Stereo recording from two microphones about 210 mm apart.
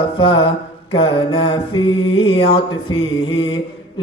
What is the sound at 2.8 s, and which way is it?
Mantra, 70° left (ahead or behind).